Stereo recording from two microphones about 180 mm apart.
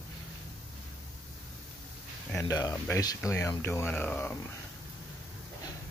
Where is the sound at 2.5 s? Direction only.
20° left (ahead or behind).